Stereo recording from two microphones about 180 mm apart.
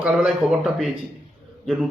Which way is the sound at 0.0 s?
Centre (ahead or behind).